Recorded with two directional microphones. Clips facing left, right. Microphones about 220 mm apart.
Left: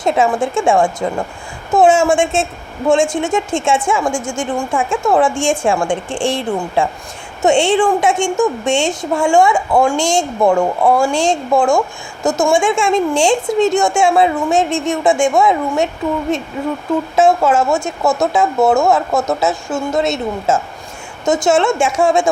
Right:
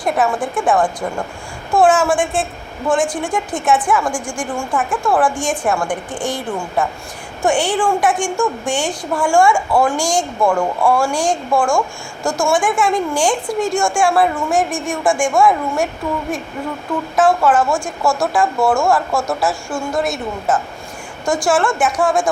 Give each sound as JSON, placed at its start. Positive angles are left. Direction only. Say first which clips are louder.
{"t": 0.0, "sound": "a woman's voice", "louder": "left 3 dB", "side_deg": 25}
{"t": 17.2, "sound": "a woman's voice", "louder": "left 1 dB", "side_deg": 25}